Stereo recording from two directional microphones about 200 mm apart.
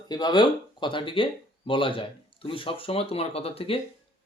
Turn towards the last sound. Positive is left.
turn(degrees=30)  # may be behind; listen again after turning